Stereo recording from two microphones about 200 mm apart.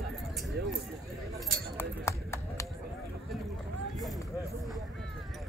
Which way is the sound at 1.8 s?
15° left (ahead or behind).